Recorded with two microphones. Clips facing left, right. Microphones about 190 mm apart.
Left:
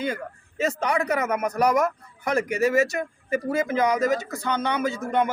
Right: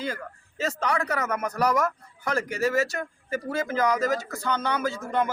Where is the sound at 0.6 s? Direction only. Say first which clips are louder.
Left 3 dB; 15° left (ahead or behind).